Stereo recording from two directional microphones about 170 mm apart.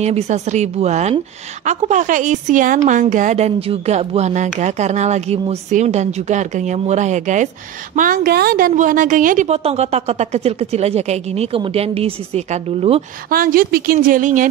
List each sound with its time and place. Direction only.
0.0 s a woman's voice: 40° right (ahead or behind)
13.3 s speech: 60° right (ahead or behind)